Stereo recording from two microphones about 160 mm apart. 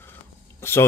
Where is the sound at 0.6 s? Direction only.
15° left (ahead or behind).